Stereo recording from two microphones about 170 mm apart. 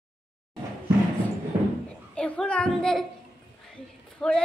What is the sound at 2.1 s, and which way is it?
Speech, 5° left (ahead or behind).